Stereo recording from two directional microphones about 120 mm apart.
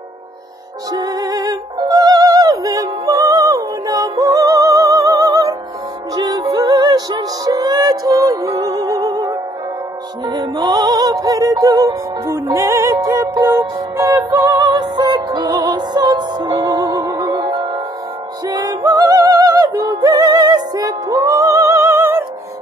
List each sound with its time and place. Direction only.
0.9 s music: 30° right (ahead or behind)